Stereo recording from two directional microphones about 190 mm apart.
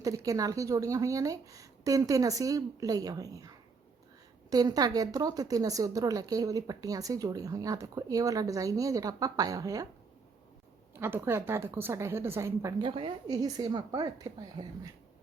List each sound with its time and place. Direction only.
0.0 s a woman's voice: 20° right (ahead or behind)
10.9 s a woman's voice: 10° right (ahead or behind)